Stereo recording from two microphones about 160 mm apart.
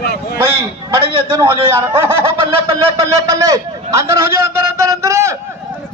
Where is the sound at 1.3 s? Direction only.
15° right (ahead or behind).